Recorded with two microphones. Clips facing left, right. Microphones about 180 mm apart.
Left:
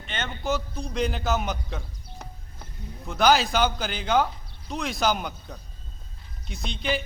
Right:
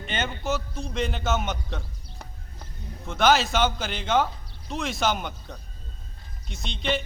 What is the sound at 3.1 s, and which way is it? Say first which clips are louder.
A man's voice: even; centre (ahead or behind).